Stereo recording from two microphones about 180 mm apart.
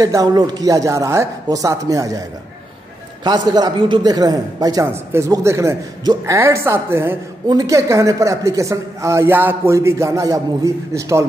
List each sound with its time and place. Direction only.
0.0 s a man's voice: 20° right (ahead or behind)
3.3 s a man's voice: 20° right (ahead or behind)